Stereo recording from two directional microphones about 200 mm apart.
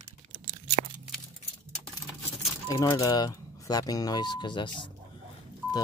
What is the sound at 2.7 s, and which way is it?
Speech, 15° left (ahead or behind).